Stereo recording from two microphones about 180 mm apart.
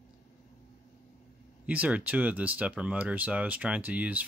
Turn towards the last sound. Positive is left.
turn(degrees=-10)  # may be behind; listen again after turning